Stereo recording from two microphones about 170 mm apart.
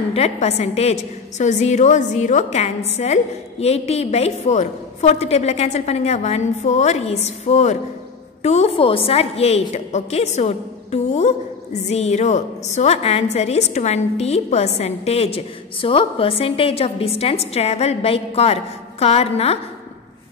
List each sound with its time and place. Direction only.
0.1 s a woman's voice: 40° left (ahead or behind)